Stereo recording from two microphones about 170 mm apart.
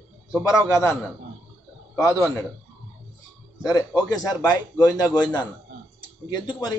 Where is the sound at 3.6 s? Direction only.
20° left (ahead or behind).